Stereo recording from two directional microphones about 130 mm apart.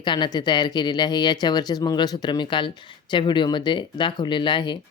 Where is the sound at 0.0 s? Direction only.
35° left (ahead or behind).